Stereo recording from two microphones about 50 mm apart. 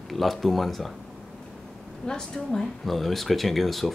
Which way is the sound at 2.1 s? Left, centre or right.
Centre.